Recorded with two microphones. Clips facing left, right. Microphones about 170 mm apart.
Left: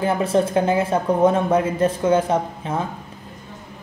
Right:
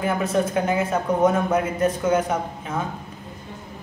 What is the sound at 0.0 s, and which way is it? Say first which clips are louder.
A man's voice: left 3 dB; 30° left (ahead or behind).